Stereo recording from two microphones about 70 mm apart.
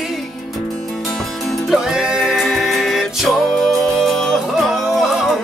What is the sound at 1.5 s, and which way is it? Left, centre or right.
Music, centre.